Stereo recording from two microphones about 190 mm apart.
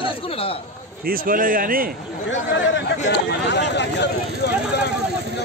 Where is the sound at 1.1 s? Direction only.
45° right (ahead or behind).